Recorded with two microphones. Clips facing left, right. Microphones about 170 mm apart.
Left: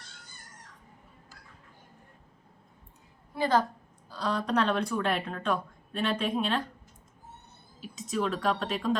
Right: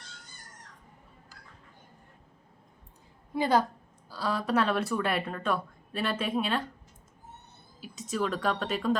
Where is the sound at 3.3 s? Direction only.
15° right (ahead or behind).